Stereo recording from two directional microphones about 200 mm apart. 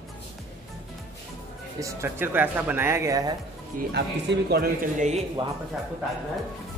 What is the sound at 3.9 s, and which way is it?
A man's voice, 55° right (ahead or behind).